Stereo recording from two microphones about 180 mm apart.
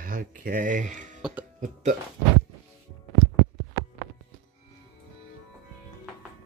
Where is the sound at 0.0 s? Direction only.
50° right (ahead or behind).